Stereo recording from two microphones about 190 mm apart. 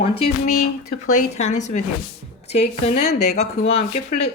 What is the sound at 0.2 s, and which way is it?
A woman's voice, 35° left (ahead or behind).